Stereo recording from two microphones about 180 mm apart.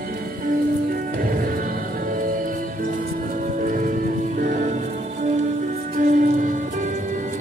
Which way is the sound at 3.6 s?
45° right (ahead or behind).